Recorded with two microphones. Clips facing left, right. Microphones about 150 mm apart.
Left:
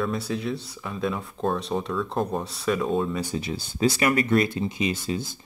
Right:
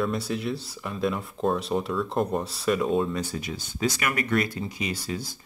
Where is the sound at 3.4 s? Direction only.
30° left (ahead or behind).